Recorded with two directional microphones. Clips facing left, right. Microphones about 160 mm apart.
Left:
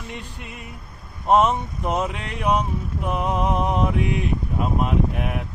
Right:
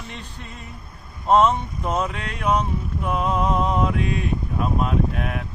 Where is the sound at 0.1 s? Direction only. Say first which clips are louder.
Left 2 dB; 10° left (ahead or behind).